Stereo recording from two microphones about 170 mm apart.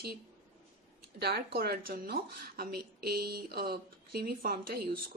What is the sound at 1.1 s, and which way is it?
A woman's voice, 65° right (ahead or behind).